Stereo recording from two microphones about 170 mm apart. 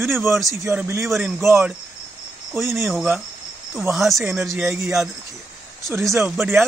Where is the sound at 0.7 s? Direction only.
10° right (ahead or behind).